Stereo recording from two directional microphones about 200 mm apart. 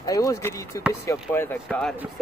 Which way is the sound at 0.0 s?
15° left (ahead or behind).